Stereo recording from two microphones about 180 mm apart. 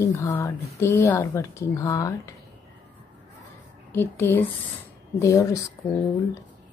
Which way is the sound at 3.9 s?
10° left (ahead or behind).